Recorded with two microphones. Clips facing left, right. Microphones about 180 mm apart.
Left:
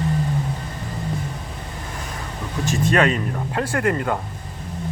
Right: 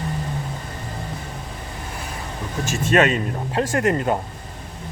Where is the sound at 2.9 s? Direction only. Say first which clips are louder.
Right 3 dB; 20° right (ahead or behind).